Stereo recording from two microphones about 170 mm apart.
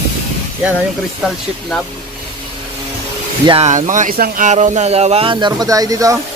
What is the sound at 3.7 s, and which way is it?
Speech, 45° right (ahead or behind).